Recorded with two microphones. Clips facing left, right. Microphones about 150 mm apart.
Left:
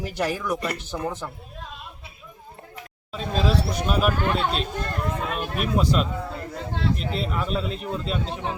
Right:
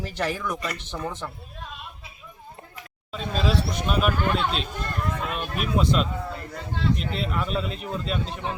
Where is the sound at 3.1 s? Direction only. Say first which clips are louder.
Left 2 dB; centre (ahead or behind).